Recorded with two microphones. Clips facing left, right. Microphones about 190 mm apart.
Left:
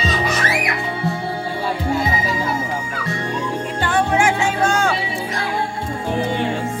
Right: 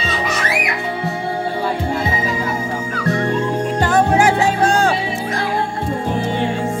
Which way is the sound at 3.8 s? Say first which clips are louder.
Right 3 dB; 40° right (ahead or behind).